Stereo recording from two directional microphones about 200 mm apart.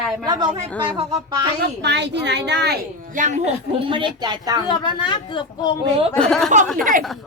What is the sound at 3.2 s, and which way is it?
Speech, 35° right (ahead or behind).